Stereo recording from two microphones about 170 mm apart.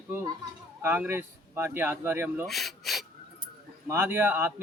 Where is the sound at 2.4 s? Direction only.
Centre (ahead or behind).